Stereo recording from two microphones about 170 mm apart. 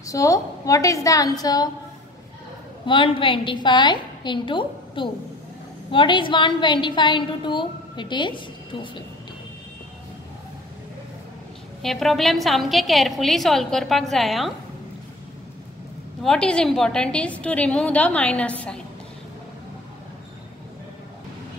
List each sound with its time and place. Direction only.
0.0 s a woman's voice: 20° left (ahead or behind)
2.9 s a woman's voice: 30° left (ahead or behind)
11.8 s a woman's voice: centre (ahead or behind)
16.2 s a woman's voice: 5° left (ahead or behind)